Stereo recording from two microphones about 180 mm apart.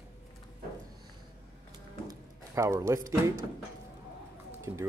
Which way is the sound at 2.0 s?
15° right (ahead or behind).